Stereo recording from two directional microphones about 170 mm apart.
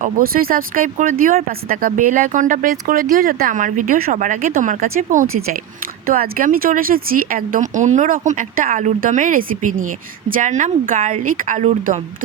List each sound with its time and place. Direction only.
0.0 s speech: 60° right (ahead or behind)